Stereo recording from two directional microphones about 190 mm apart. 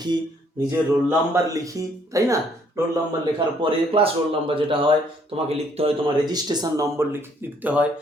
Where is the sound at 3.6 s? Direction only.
30° right (ahead or behind).